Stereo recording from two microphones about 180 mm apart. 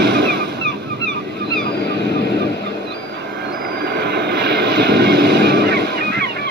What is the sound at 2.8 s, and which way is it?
Vehicle, 70° right (ahead or behind).